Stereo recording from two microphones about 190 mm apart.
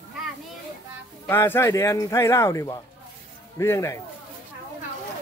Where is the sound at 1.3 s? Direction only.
10° left (ahead or behind).